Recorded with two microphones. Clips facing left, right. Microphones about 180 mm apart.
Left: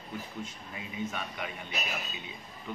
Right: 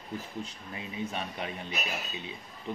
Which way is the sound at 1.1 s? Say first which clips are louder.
Right 2 dB; 30° right (ahead or behind).